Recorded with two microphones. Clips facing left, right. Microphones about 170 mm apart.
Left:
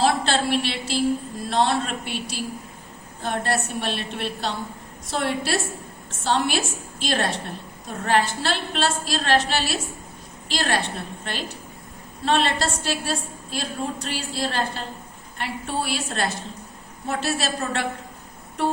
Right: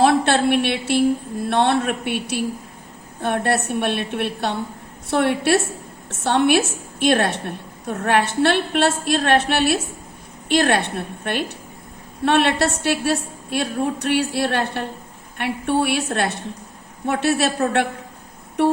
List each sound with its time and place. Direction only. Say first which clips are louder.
0.0 s a woman's voice: right 5 dB; 60° right (ahead or behind)